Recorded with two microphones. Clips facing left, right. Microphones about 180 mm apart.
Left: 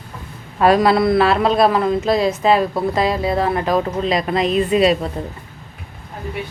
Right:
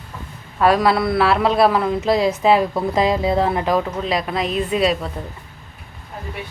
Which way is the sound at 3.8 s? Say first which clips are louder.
Left 2 dB; 10° left (ahead or behind).